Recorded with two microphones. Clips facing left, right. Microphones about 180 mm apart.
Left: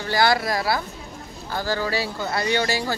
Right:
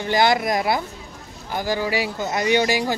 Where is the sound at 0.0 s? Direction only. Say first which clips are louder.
Right 2 dB; 20° right (ahead or behind).